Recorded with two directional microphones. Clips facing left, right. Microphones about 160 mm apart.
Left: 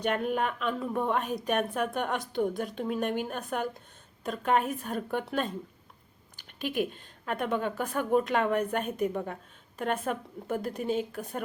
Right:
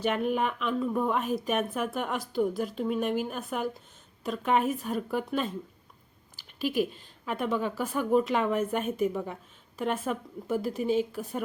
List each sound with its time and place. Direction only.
0.0 s a woman's voice: 5° right (ahead or behind)
6.7 s a woman's voice: 50° left (ahead or behind)
7.3 s a woman's voice: 5° right (ahead or behind)